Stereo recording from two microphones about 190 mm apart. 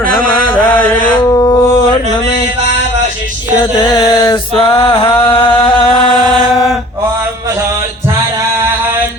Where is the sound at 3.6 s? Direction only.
20° left (ahead or behind).